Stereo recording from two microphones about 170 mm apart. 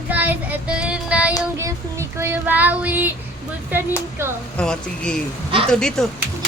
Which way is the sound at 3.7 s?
10° right (ahead or behind).